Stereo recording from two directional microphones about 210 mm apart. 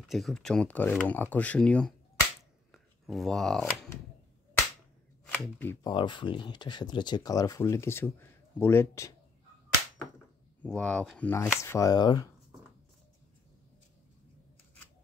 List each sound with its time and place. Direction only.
0.1 s speech: centre (ahead or behind)
5.3 s speech: 10° left (ahead or behind)
5.9 s speech: 20° left (ahead or behind)
10.6 s speech: 5° left (ahead or behind)